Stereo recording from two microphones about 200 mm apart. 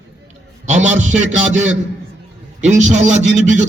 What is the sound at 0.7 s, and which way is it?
Music, 35° right (ahead or behind).